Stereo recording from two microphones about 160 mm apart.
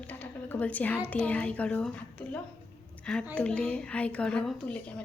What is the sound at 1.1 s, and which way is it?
A woman's voice, 10° left (ahead or behind).